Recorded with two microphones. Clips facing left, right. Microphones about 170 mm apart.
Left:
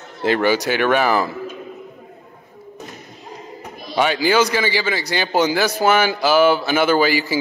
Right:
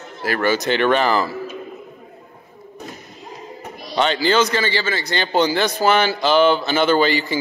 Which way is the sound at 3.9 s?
10° left (ahead or behind).